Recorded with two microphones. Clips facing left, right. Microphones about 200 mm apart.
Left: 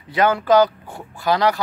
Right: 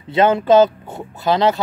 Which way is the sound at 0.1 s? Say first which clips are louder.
Right 3 dB; 25° right (ahead or behind).